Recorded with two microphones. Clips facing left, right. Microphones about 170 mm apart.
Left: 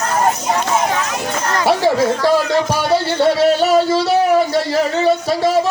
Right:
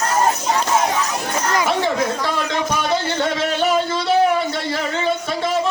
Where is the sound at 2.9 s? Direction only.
35° left (ahead or behind).